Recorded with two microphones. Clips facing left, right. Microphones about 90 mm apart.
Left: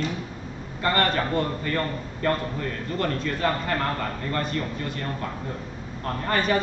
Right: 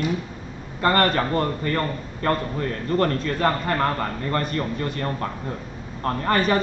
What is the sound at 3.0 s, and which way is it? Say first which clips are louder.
A man's voice: right 4 dB; 45° right (ahead or behind).